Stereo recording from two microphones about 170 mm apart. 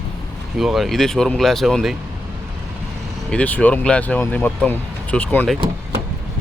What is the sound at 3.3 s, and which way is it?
Speech, 10° left (ahead or behind).